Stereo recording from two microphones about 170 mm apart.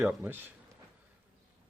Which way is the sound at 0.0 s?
10° right (ahead or behind).